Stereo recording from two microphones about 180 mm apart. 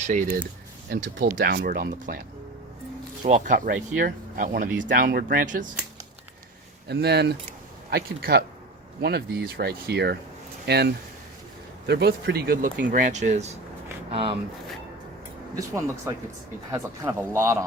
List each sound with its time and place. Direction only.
0.0 s speech: 45° right (ahead or behind)
0.9 s speech: 60° right (ahead or behind)
3.2 s speech: 45° right (ahead or behind)
6.8 s speech: 65° right (ahead or behind)
12.9 s speech: 45° right (ahead or behind)
15.5 s a man's voice: 15° right (ahead or behind)